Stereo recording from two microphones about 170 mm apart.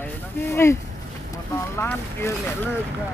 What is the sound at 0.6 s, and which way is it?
Speech, 15° left (ahead or behind).